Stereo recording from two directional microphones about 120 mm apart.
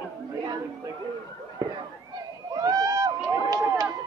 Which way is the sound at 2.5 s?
30° right (ahead or behind).